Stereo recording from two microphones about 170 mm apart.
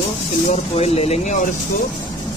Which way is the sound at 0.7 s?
35° left (ahead or behind).